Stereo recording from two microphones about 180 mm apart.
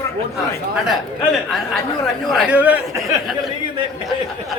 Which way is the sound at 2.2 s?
Centre (ahead or behind).